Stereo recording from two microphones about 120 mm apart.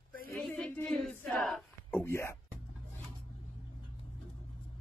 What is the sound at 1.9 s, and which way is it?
Speech, 20° left (ahead or behind).